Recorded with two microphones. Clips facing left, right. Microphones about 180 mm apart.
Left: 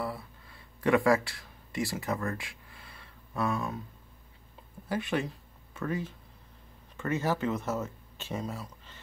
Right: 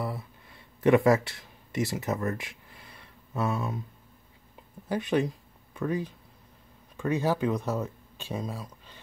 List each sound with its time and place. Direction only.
0.7 s speech: 20° right (ahead or behind)
4.8 s speech: 20° right (ahead or behind)